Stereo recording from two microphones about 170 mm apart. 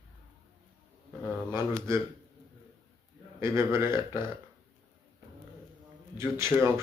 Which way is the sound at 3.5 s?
25° left (ahead or behind).